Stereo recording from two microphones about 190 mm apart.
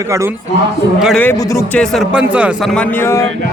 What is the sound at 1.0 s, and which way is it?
Speech, centre (ahead or behind).